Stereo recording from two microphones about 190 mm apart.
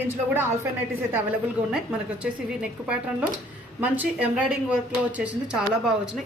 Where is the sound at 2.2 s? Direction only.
5° right (ahead or behind).